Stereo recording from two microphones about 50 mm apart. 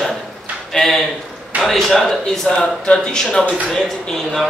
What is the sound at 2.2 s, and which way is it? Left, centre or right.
Speech, centre.